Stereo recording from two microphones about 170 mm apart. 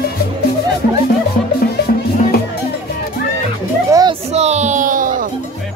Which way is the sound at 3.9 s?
25° right (ahead or behind).